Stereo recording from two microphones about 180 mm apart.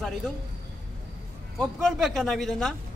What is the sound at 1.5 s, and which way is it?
A man's voice, centre (ahead or behind).